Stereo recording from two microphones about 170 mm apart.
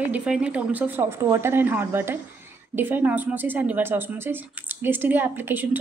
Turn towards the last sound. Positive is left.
turn(degrees=-10)  # may be behind; listen again after turning